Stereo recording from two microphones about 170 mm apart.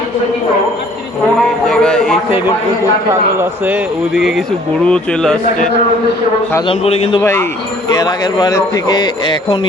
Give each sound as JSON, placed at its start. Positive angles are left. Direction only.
{"t": 1.4, "sound": "a man's voice", "side_deg": 5}
{"t": 3.1, "sound": "a man's voice", "side_deg": -15}
{"t": 4.1, "sound": "a man's voice", "side_deg": 0}
{"t": 6.7, "sound": "a man's voice", "side_deg": 35}
{"t": 7.2, "sound": "speech", "side_deg": 15}